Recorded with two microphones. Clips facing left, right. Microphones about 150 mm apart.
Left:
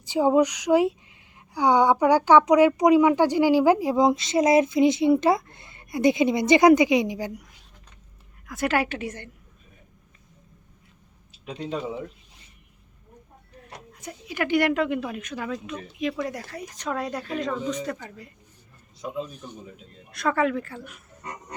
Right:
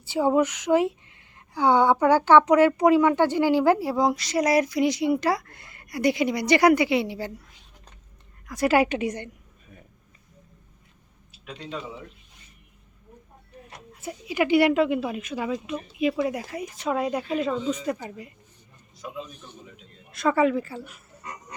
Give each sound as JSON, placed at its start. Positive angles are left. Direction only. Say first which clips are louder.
{"t": 0.0, "sound": "speech", "louder": "left 2 dB", "side_deg": 15}
{"t": 8.4, "sound": "a woman's voice", "louder": "right 3 dB", "side_deg": 0}
{"t": 8.7, "sound": "speech", "louder": "right 6 dB", "side_deg": -15}
{"t": 14.0, "sound": "speech", "louder": "right 4 dB", "side_deg": -10}
{"t": 19.3, "sound": "a man's voice", "louder": "left 5 dB", "side_deg": 10}
{"t": 20.1, "sound": "speech", "louder": "right 2 dB", "side_deg": 0}